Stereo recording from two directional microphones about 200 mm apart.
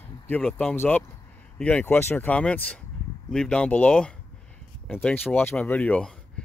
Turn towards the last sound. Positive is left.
turn(degrees=5)  # may be behind; listen again after turning